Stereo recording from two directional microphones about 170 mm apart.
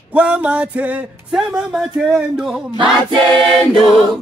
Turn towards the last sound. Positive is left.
turn(degrees=5)  # may be behind; listen again after turning